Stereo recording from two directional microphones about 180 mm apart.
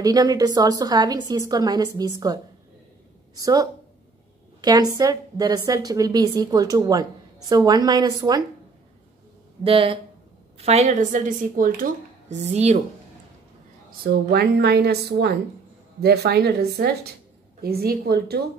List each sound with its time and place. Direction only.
0.0 s a woman's voice: 20° right (ahead or behind)
9.6 s a woman's voice: 30° right (ahead or behind)
14.0 s speech: 60° right (ahead or behind)